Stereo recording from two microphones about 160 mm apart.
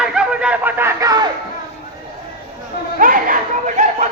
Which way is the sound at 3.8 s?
50° right (ahead or behind).